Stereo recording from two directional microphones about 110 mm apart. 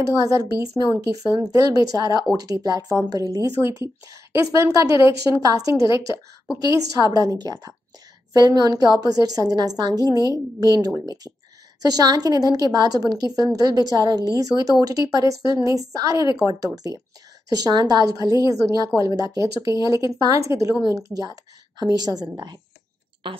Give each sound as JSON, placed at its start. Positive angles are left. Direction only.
{"t": 0.0, "sound": "a woman's voice", "side_deg": -30}